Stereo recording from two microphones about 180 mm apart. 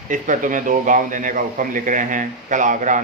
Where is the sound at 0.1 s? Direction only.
45° right (ahead or behind).